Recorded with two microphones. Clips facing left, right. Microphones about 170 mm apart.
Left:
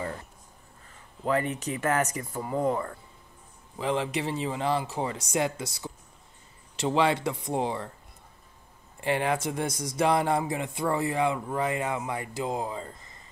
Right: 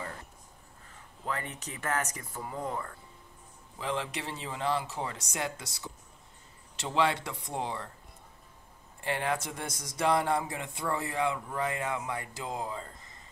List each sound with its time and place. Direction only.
1.3 s speech: 90° left; by 2.8 s 75° left (ahead or behind)
3.8 s speech: 15° left (ahead or behind)
9.0 s speech: 15° left (ahead or behind)